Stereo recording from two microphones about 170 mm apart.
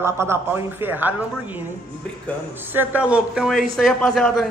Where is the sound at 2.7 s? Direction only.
10° right (ahead or behind).